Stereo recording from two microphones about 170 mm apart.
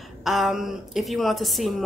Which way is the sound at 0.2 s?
Centre (ahead or behind).